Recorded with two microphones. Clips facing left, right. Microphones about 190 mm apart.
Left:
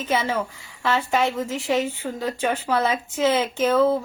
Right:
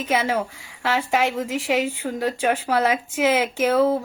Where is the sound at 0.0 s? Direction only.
10° right (ahead or behind).